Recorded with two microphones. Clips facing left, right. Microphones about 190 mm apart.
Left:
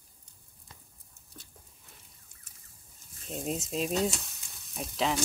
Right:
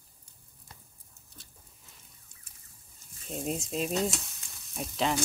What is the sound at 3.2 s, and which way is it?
Stir, centre (ahead or behind).